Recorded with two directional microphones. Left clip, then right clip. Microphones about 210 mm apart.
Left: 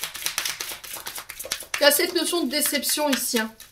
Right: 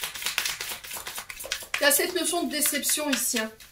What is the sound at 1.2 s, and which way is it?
Speech, 40° left (ahead or behind).